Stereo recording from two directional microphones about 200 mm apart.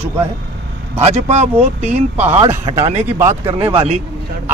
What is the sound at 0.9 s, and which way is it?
Speech, 35° right (ahead or behind).